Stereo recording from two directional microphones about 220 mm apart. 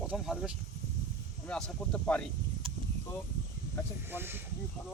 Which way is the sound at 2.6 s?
25° right (ahead or behind).